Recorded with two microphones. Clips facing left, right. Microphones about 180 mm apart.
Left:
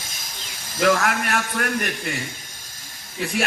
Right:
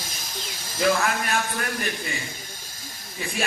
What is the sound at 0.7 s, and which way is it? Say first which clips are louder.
A man's voice: left 3 dB; 70° left (ahead or behind).